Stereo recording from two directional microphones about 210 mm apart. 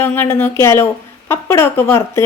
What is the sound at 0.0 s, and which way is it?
A woman's voice, 10° left (ahead or behind).